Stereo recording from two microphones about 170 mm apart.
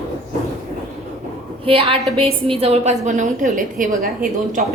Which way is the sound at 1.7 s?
35° right (ahead or behind).